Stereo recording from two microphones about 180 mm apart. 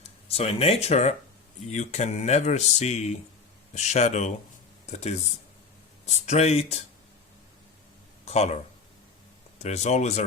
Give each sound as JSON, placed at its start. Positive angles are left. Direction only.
{"t": 0.3, "sound": "speech", "side_deg": 35}
{"t": 8.2, "sound": "speech", "side_deg": 35}
{"t": 9.6, "sound": "speech", "side_deg": 40}